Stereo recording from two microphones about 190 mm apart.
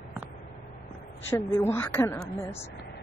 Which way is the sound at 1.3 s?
15° left (ahead or behind).